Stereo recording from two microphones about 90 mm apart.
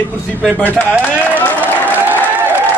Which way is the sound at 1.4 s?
20° left (ahead or behind).